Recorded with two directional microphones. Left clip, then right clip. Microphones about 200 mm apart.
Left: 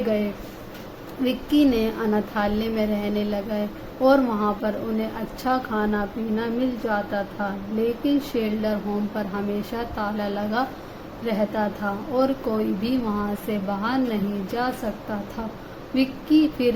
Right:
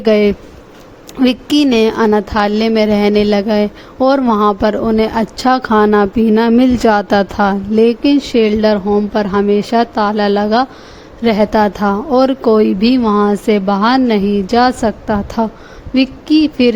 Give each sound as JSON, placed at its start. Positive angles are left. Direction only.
{"t": 1.2, "sound": "a woman's voice", "side_deg": -50}
{"t": 8.0, "sound": "a woman's voice", "side_deg": -40}